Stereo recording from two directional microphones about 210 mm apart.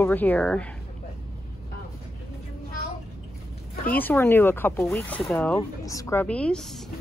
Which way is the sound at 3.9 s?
10° left (ahead or behind).